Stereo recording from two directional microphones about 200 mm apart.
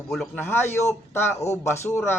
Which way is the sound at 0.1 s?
Centre (ahead or behind).